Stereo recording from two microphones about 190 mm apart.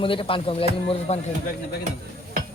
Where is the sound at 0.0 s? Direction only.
25° left (ahead or behind).